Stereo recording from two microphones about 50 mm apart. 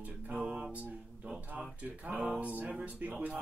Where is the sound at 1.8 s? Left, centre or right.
Right.